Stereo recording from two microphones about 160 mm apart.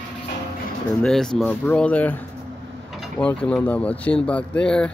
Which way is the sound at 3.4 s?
10° left (ahead or behind).